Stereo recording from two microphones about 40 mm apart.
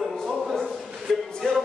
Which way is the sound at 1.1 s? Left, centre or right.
Centre.